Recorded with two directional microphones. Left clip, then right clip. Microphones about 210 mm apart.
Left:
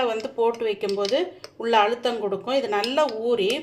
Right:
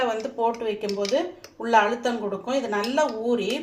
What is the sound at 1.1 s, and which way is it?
Speech, 45° left (ahead or behind).